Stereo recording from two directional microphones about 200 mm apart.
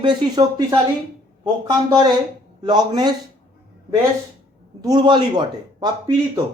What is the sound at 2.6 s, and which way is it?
Speech, 20° right (ahead or behind).